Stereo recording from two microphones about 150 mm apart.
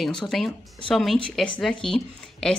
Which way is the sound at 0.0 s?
5° left (ahead or behind).